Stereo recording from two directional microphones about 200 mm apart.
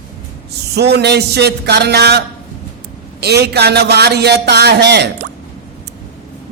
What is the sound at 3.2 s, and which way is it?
Speech, 55° right (ahead or behind).